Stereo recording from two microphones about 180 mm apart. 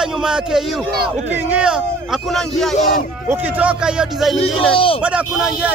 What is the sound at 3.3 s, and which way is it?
A man's voice, 10° right (ahead or behind).